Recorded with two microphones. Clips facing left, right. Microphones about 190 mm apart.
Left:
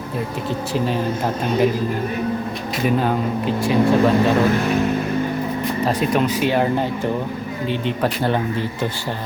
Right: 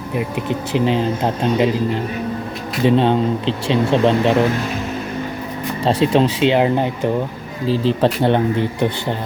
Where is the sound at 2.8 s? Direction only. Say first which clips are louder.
Right 5 dB; 25° right (ahead or behind).